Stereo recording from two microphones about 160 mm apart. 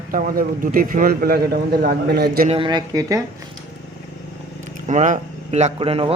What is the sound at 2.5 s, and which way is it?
Speech, 30° right (ahead or behind).